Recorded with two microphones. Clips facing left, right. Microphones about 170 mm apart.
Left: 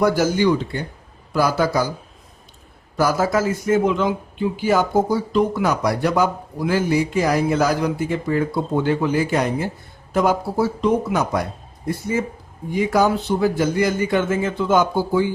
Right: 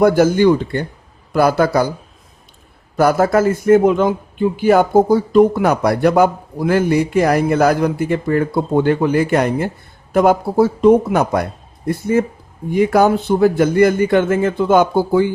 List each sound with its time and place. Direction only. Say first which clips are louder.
0.0 s a man's voice: right 6 dB; 55° right (ahead or behind)
3.0 s a man's voice: right 6 dB; 60° right (ahead or behind)